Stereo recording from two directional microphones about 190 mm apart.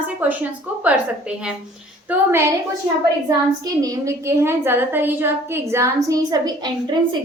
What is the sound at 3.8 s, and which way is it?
A woman's voice, 15° right (ahead or behind).